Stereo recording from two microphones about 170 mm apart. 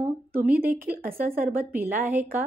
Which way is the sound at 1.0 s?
60° right (ahead or behind).